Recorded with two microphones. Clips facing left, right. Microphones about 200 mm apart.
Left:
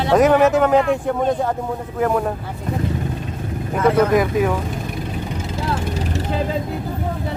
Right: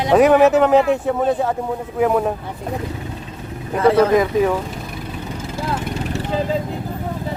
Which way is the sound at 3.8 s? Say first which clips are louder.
Right 2 dB; 30° right (ahead or behind).